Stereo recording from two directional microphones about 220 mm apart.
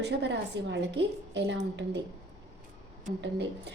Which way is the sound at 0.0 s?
50° right (ahead or behind).